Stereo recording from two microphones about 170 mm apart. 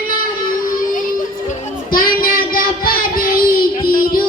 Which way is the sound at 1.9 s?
55° left (ahead or behind).